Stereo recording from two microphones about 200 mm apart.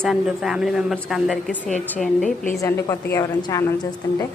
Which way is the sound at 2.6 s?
15° left (ahead or behind).